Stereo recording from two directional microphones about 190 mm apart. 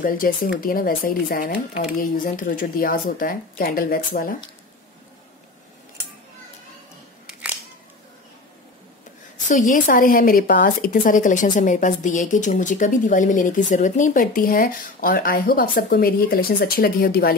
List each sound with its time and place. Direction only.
0.0 s speech: 50° left (ahead or behind)
9.5 s speech: 45° left (ahead or behind)